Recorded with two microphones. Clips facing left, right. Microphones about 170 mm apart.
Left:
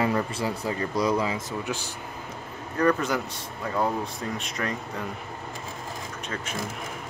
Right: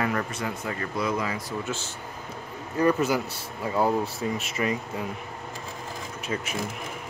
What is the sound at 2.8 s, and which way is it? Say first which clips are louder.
Speech: right 1 dB; 10° right (ahead or behind).